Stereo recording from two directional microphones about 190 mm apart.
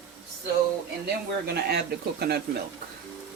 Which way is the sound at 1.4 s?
55° right (ahead or behind).